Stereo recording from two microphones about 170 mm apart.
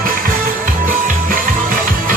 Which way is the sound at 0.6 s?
55° right (ahead or behind).